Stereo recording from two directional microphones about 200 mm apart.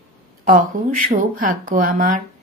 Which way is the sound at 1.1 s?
40° right (ahead or behind).